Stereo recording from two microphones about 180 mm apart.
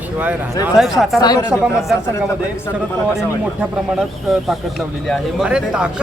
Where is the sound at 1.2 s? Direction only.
20° left (ahead or behind).